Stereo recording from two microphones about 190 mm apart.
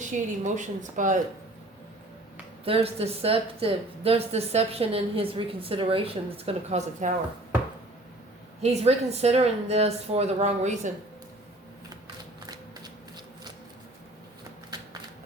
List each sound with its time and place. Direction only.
0.0 s a woman's voice: 40° right (ahead or behind)
2.6 s a woman's voice: 30° right (ahead or behind)
8.6 s a woman's voice: 35° right (ahead or behind)
12.0 s a sound: 20° right (ahead or behind)